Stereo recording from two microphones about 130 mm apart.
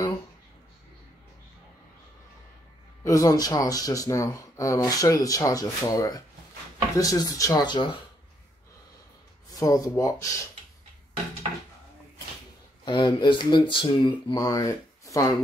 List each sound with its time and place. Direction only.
3.0 s speech: 25° left (ahead or behind)
9.5 s speech: 25° left (ahead or behind)
12.8 s speech: 35° left (ahead or behind)